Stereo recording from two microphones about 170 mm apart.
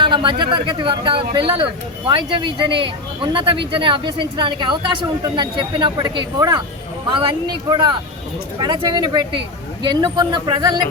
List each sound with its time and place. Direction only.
0.0 s speech: 30° right (ahead or behind)